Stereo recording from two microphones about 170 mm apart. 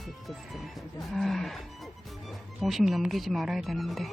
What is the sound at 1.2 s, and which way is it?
Speech, centre (ahead or behind).